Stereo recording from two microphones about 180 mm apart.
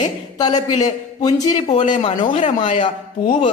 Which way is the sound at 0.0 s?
20° left (ahead or behind).